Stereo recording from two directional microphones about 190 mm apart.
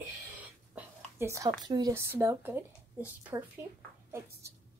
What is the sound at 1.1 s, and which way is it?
A woman's voice, 15° right (ahead or behind).